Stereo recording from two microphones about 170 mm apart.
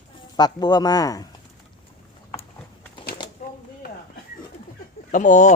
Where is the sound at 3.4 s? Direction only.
50° left (ahead or behind).